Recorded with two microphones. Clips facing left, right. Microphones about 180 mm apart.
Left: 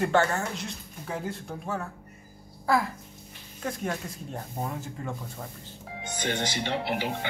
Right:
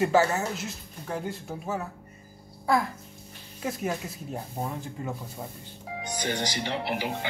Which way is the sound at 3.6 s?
5° right (ahead or behind).